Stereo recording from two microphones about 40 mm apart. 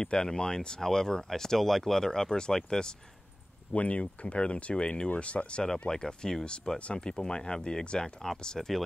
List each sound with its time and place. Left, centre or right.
0.0 s speech: centre
3.7 s speech: left
8.5 s speech: centre